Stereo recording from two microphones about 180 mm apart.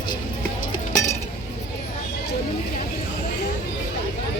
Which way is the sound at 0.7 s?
20° left (ahead or behind).